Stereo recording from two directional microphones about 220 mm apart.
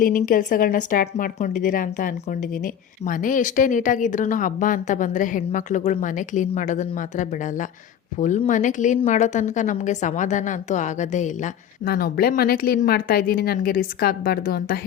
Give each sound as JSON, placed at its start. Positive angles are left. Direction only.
{"t": 0.3, "sound": "a woman's voice", "side_deg": 40}